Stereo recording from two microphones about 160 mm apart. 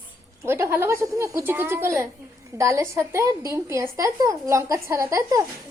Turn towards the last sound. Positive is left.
turn(degrees=-20)  # may be behind; listen again after turning